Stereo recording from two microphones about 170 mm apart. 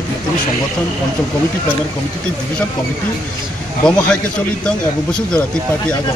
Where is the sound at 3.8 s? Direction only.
5° left (ahead or behind).